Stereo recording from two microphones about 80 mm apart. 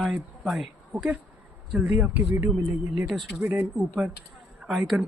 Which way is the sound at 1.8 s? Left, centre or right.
Centre.